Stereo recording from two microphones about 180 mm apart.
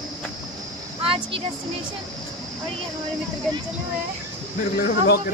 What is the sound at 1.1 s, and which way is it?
Speech, 30° right (ahead or behind).